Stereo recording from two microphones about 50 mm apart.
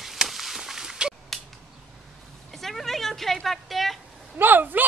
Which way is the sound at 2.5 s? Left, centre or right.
Centre.